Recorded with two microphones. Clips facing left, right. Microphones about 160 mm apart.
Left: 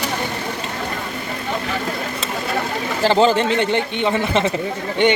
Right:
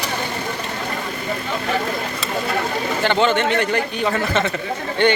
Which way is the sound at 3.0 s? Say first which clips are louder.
Left 3 dB; 35° left (ahead or behind).